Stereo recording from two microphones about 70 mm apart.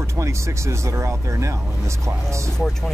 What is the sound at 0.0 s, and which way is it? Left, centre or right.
Speech, right.